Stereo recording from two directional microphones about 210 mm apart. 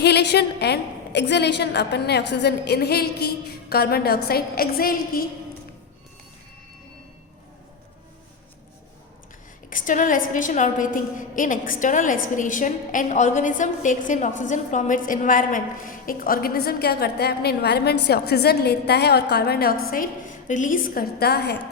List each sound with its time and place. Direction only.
0.0 s a woman's voice: 50° left (ahead or behind)
9.6 s a woman's voice: 40° left (ahead or behind)